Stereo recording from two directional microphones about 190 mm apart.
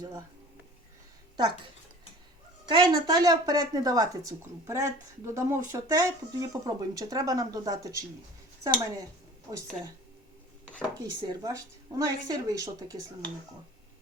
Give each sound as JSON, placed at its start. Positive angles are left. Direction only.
{"t": 2.6, "sound": "speech", "side_deg": -20}
{"t": 11.0, "sound": "speech", "side_deg": -20}